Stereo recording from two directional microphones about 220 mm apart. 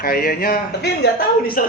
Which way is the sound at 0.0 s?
40° left (ahead or behind).